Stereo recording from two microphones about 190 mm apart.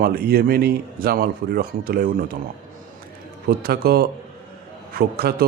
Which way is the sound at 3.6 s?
50° right (ahead or behind).